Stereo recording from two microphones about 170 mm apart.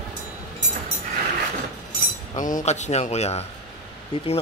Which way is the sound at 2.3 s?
50° left (ahead or behind).